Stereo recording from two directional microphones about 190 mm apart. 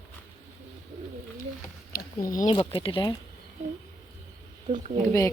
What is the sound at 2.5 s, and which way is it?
Speech, 30° left (ahead or behind).